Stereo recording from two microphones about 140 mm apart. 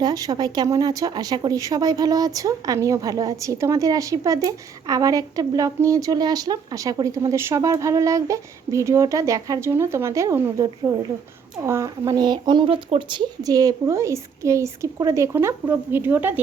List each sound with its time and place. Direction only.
0.0 s speech: 30° right (ahead or behind)